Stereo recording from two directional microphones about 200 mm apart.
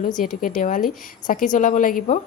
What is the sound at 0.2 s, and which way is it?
A woman's voice, 40° left (ahead or behind).